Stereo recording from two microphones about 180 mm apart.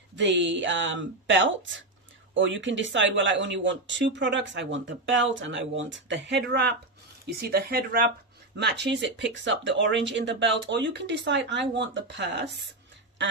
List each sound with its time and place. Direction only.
0.1 s speech: 80° right
7.2 s speech: 60° right (ahead or behind)
8.5 s speech: 70° right (ahead or behind); by 9.6 s 90° right
9.7 s speech: 80° right